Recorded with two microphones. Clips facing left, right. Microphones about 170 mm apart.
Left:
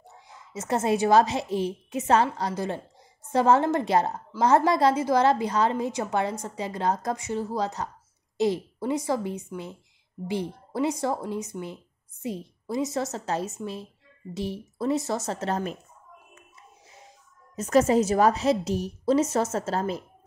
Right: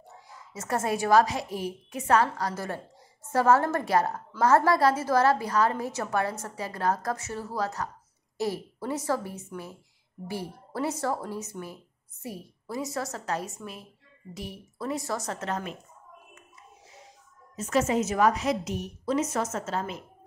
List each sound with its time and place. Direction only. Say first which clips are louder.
0.3 s a woman's voice: left 3 dB; 20° left (ahead or behind)
17.6 s a woman's voice: left 5 dB; 40° left (ahead or behind)